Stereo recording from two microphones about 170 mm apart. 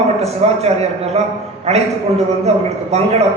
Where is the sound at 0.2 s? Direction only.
40° right (ahead or behind).